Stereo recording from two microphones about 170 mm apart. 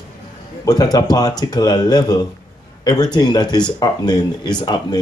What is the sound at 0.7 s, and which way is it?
Speech, 20° left (ahead or behind).